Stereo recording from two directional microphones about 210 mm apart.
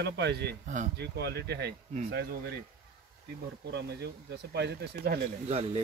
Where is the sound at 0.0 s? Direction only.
55° right (ahead or behind).